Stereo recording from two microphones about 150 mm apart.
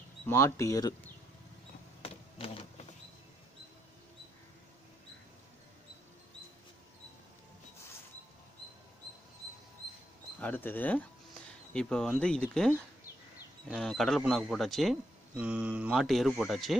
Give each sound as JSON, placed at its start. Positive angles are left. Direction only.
{"t": 0.3, "sound": "speech", "side_deg": 20}
{"t": 2.0, "sound": "a sound", "side_deg": 40}
{"t": 10.4, "sound": "speech", "side_deg": 10}
{"t": 13.7, "sound": "speech", "side_deg": 5}